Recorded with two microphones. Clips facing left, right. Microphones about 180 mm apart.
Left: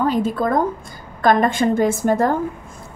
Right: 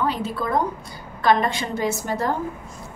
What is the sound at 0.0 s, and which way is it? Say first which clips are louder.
A woman's voice: left 6 dB; 45° left (ahead or behind).